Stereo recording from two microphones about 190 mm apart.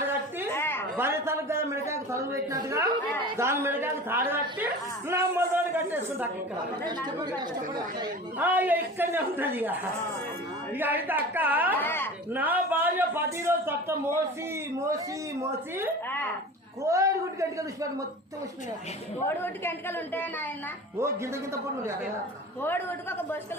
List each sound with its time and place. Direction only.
0.5 s a sound: 10° left (ahead or behind)
0.9 s a man's voice: 15° right (ahead or behind)
6.8 s speech: 20° right (ahead or behind)
8.4 s a man's voice: 10° right (ahead or behind)
10.8 s a man's voice: 10° right (ahead or behind)
11.8 s speech: 10° left (ahead or behind)
12.3 s a man's voice: 10° right (ahead or behind)
19.4 s a woman's voice: 10° left (ahead or behind)
22.6 s a woman's voice: 10° left (ahead or behind)